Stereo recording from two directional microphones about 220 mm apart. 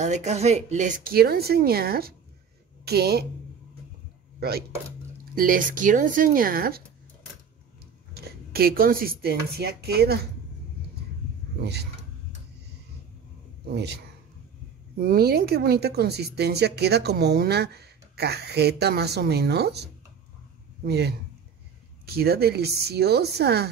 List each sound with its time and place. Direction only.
0.0 s a woman's voice: 30° right (ahead or behind)
4.4 s speech: 45° right (ahead or behind)
8.1 s speech: 45° right (ahead or behind)
11.6 s speech: 50° right (ahead or behind)
15.0 s speech: 40° right (ahead or behind)